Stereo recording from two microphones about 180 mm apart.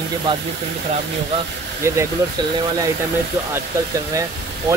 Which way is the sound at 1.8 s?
15° right (ahead or behind).